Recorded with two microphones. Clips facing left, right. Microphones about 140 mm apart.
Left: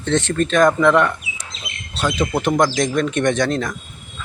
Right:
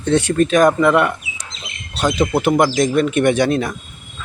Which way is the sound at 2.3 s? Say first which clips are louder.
Right 1 dB; 5° right (ahead or behind).